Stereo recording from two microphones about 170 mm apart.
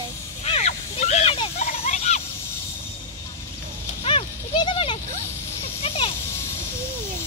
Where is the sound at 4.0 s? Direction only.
35° left (ahead or behind).